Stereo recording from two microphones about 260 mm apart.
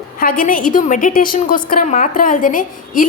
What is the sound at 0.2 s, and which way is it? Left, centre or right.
A woman's voice, left.